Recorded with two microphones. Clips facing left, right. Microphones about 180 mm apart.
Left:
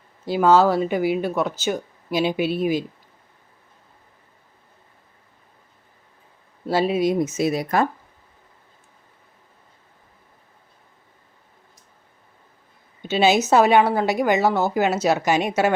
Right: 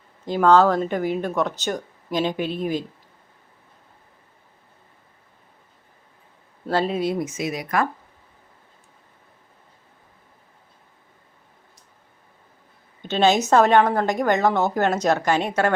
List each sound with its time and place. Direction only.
0.3 s speech: 10° left (ahead or behind)
6.7 s speech: 10° left (ahead or behind); by 7.9 s 30° left (ahead or behind)
13.0 s a woman's voice: 10° left (ahead or behind)